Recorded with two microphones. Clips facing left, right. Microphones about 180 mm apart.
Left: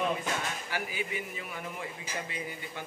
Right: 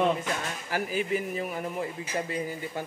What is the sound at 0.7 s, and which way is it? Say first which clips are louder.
Speech: right 10 dB; 40° right (ahead or behind).